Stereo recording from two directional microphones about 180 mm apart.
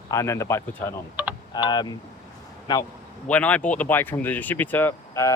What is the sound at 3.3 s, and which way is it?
Speech, 5° left (ahead or behind).